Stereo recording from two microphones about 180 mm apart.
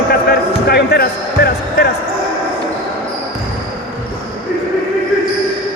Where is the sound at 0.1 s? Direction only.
60° left (ahead or behind).